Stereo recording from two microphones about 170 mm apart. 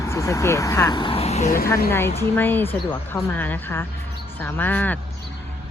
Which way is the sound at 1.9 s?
15° left (ahead or behind).